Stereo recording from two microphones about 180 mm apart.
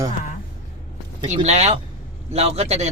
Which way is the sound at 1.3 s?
40° right (ahead or behind).